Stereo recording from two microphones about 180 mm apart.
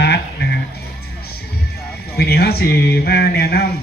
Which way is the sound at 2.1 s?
60° left (ahead or behind).